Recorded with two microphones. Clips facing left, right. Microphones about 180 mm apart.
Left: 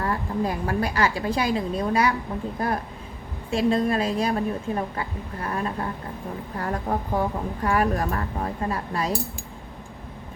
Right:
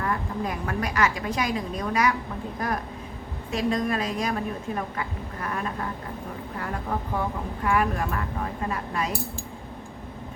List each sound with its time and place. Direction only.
0.0 s a woman's voice: 30° left (ahead or behind)
6.9 s a woman's voice: 40° left (ahead or behind)